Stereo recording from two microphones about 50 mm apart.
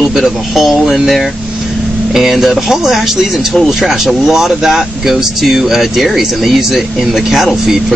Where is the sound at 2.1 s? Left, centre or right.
Centre.